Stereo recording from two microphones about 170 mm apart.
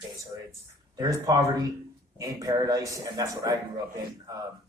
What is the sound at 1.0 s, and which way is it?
Speech, 20° right (ahead or behind).